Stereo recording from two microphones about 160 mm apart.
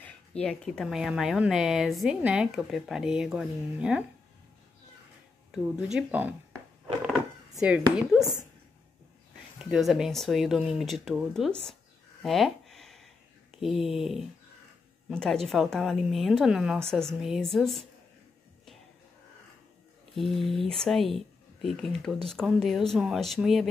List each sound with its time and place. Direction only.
0.0 s speech: 5° left (ahead or behind)
5.5 s speech: 5° right (ahead or behind)
7.6 s speech: 5° right (ahead or behind)
9.6 s speech: 5° right (ahead or behind)
12.2 s a sound: centre (ahead or behind)
15.0 s speech: 5° left (ahead or behind)
20.2 s speech: centre (ahead or behind)